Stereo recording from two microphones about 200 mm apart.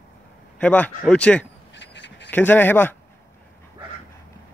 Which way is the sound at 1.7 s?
60° left (ahead or behind).